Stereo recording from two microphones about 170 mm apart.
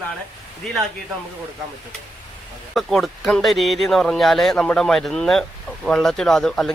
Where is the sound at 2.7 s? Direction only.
Centre (ahead or behind).